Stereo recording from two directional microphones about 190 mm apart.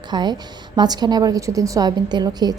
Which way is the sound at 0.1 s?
20° right (ahead or behind).